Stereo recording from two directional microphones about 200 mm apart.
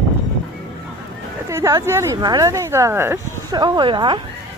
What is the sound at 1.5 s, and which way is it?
Speech, 15° right (ahead or behind).